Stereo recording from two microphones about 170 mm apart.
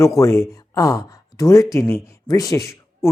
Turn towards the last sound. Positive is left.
turn(degrees=20)  # may be behind; listen again after turning